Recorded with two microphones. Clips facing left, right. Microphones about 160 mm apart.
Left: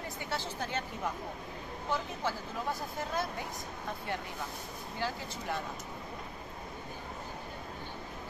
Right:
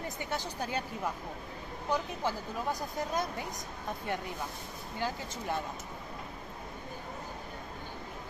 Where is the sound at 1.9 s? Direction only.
15° right (ahead or behind).